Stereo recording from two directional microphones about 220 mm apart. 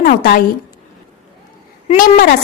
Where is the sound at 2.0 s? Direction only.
40° left (ahead or behind).